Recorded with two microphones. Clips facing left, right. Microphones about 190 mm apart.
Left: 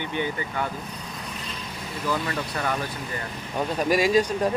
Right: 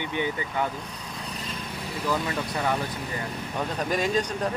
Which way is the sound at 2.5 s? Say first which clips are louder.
Right 2 dB; 15° right (ahead or behind).